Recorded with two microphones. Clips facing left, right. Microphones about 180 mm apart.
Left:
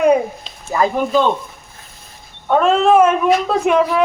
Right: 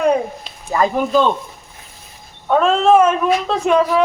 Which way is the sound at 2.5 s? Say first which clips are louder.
Even; 5° left (ahead or behind).